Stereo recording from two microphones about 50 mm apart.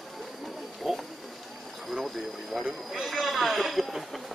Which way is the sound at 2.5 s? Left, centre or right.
Centre.